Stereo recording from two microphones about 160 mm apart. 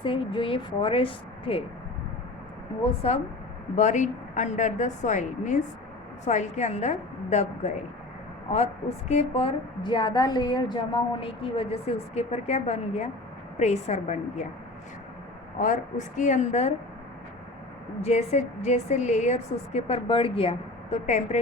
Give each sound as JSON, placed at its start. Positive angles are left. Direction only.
{"t": 0.0, "sound": "a woman's voice", "side_deg": 30}
{"t": 3.0, "sound": "a woman's voice", "side_deg": 40}
{"t": 15.6, "sound": "a woman's voice", "side_deg": 50}
{"t": 18.0, "sound": "a woman's voice", "side_deg": 40}